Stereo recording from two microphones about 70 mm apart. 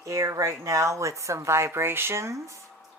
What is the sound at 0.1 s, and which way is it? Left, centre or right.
Speech, right.